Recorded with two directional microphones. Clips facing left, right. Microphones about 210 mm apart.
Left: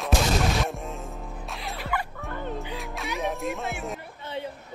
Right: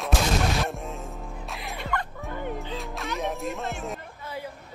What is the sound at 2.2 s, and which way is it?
Music, 15° right (ahead or behind).